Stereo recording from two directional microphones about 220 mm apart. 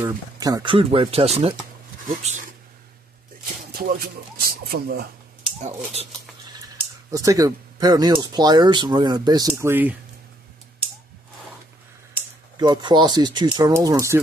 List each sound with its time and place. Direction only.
0.0 s speech: 15° right (ahead or behind); by 2.5 s 35° right (ahead or behind)
4.0 s speech: 45° right (ahead or behind)
7.1 s speech: 15° right (ahead or behind)
12.5 s speech: 20° right (ahead or behind)